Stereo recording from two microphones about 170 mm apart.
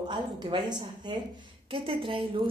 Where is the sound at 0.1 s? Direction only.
25° right (ahead or behind).